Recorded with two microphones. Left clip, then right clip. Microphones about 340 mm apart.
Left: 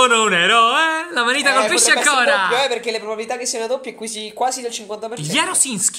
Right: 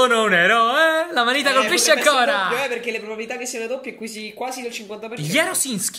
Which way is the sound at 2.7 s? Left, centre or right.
Left.